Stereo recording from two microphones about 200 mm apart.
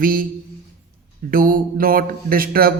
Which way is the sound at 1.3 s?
45° right (ahead or behind).